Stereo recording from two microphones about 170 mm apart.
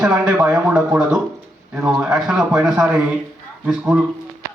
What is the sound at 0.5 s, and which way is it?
A man's voice, 10° right (ahead or behind).